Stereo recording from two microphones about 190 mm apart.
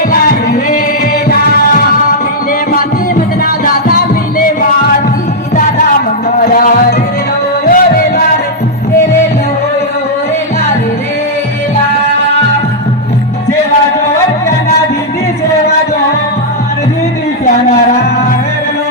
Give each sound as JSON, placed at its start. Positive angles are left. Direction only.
{"t": 0.1, "sound": "music", "side_deg": 50}
{"t": 3.4, "sound": "music", "side_deg": 50}
{"t": 6.4, "sound": "music", "side_deg": 50}
{"t": 7.7, "sound": "music", "side_deg": 50}